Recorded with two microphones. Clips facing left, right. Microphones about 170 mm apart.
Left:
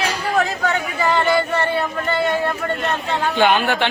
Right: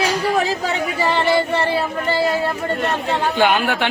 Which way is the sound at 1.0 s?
30° right (ahead or behind).